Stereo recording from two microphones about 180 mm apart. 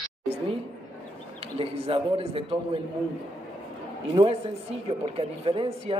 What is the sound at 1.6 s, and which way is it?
A man's voice, 30° right (ahead or behind).